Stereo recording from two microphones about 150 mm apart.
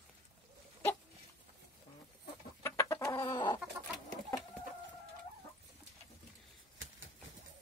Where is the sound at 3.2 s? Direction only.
30° left (ahead or behind).